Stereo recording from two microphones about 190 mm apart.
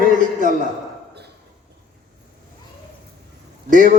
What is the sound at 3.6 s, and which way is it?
Speech, 45° right (ahead or behind).